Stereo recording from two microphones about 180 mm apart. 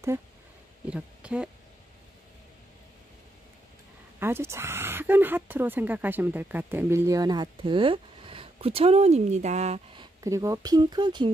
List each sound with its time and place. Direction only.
0.8 s a woman's voice: 5° right (ahead or behind)
4.2 s speech: 15° right (ahead or behind); by 9.8 s 40° right (ahead or behind)
9.9 s speech: 15° right (ahead or behind)